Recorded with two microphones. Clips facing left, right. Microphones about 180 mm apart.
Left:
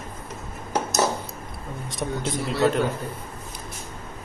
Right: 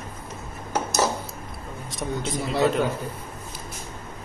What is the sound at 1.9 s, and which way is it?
Speech, centre (ahead or behind).